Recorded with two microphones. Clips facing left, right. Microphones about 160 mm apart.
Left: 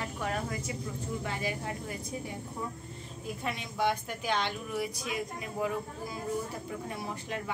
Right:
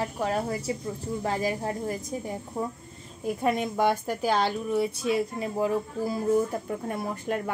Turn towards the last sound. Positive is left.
turn(degrees=-50)  # may be behind; listen again after turning